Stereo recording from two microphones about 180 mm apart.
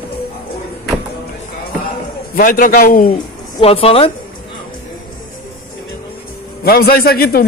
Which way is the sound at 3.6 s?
30° left (ahead or behind).